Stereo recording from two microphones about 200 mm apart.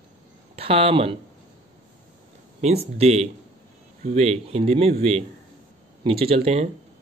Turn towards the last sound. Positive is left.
turn(degrees=-30)  # may be behind; listen again after turning